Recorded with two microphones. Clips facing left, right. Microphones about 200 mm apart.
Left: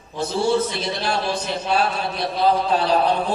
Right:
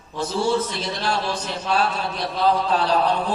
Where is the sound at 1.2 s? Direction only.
10° left (ahead or behind).